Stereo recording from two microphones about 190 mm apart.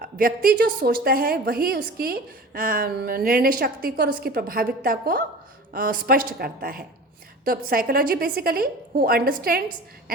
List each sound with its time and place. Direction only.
0.0 s a woman's voice: 50° right (ahead or behind)